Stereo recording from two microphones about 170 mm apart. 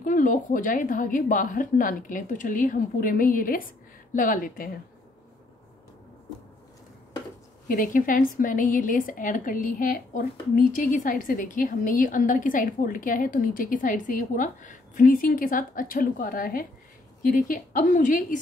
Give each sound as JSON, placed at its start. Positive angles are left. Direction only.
{"t": 0.0, "sound": "a woman's voice", "side_deg": 50}
{"t": 7.6, "sound": "a woman's voice", "side_deg": 55}